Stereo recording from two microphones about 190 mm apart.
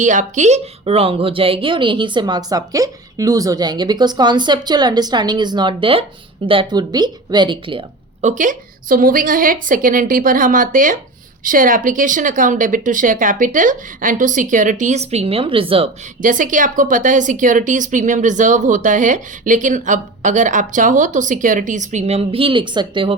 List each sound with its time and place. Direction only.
0.0 s a woman's voice: 40° right (ahead or behind)
8.4 s speech: 45° right (ahead or behind); by 15.9 s 30° right (ahead or behind)
16.2 s a woman's voice: 45° right (ahead or behind); by 23.1 s 25° right (ahead or behind)